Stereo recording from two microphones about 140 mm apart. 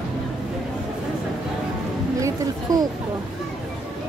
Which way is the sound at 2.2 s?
30° right (ahead or behind).